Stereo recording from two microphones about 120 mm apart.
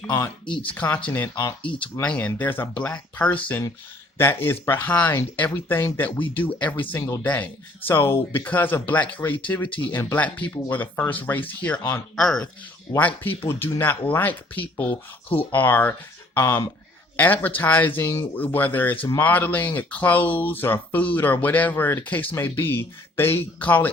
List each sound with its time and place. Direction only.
0.4 s speech: 10° left (ahead or behind)
12.1 s speech: 5° left (ahead or behind)